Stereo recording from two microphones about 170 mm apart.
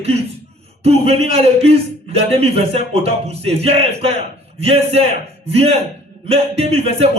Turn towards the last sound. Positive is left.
turn(degrees=-35)  # may be behind; listen again after turning